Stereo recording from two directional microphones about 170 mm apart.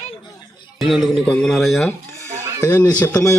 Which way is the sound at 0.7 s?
Centre (ahead or behind).